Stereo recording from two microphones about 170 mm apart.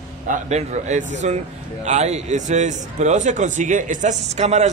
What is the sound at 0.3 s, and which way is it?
A man's voice, 40° right (ahead or behind).